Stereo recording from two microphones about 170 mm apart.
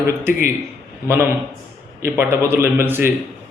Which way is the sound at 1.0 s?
10° right (ahead or behind).